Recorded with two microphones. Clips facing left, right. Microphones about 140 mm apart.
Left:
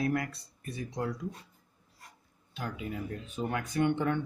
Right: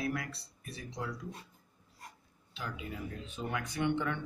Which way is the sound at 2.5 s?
55° left (ahead or behind).